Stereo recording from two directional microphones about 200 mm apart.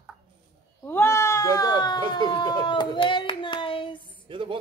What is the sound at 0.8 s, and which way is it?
Speech, 10° left (ahead or behind).